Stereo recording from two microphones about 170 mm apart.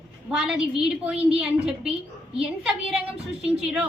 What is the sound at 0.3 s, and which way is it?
A woman's voice, 5° right (ahead or behind).